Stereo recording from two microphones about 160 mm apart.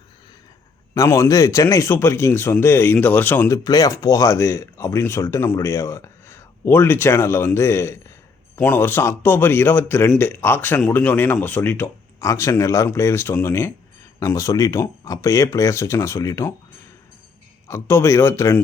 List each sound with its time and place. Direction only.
0.9 s speech: 20° left (ahead or behind)
3.6 s speech: 25° left (ahead or behind)
17.7 s speech: 15° left (ahead or behind)